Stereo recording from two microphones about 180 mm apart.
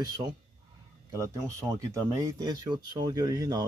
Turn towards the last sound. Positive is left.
turn(degrees=-20)  # may be behind; listen again after turning